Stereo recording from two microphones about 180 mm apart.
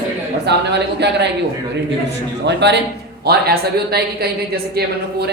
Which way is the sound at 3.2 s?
60° right (ahead or behind).